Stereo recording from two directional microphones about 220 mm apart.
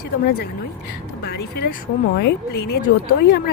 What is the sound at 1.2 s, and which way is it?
Speech, 50° left (ahead or behind).